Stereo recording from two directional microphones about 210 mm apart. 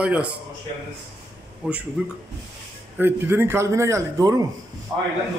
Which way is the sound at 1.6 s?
5° right (ahead or behind).